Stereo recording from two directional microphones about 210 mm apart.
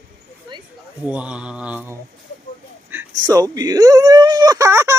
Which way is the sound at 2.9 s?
15° right (ahead or behind).